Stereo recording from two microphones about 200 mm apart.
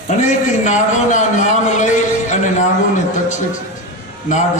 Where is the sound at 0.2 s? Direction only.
35° left (ahead or behind).